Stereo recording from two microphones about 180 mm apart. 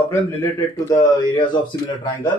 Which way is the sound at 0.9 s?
25° left (ahead or behind).